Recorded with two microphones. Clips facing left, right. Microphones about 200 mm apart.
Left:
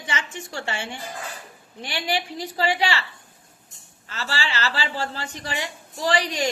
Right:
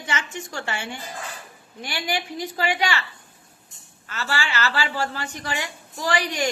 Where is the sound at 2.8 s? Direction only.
30° left (ahead or behind).